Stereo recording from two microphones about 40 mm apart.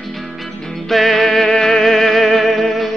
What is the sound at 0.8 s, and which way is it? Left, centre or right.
Music, centre.